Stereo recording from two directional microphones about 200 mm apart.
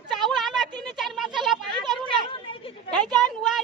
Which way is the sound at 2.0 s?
25° left (ahead or behind).